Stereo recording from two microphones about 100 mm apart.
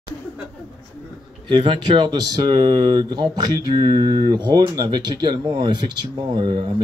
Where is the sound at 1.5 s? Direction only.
55° right (ahead or behind).